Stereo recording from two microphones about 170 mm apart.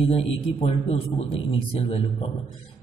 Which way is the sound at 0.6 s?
35° left (ahead or behind).